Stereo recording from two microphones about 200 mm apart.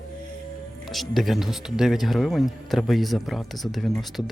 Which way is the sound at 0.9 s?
Centre (ahead or behind).